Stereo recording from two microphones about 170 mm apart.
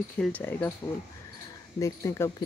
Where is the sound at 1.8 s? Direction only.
15° left (ahead or behind).